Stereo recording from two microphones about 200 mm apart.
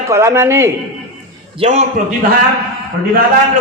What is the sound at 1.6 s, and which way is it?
Speech, 35° right (ahead or behind).